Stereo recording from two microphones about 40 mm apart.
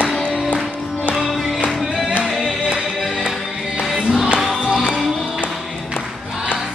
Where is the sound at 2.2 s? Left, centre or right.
Centre.